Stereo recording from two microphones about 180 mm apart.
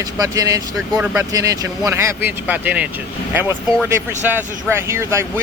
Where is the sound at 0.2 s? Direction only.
20° right (ahead or behind).